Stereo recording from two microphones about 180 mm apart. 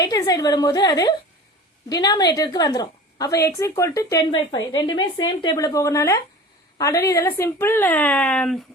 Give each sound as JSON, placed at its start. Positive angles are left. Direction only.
{"t": 0.0, "sound": "a woman's voice", "side_deg": 20}